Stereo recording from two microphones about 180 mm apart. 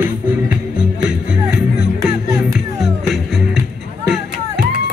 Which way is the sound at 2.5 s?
Centre (ahead or behind).